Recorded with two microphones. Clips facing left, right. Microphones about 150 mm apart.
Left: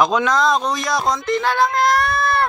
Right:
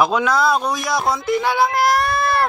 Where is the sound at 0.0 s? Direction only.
5° right (ahead or behind).